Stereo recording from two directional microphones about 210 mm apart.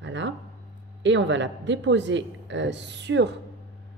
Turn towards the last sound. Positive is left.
turn(degrees=-55)  # may be behind; listen again after turning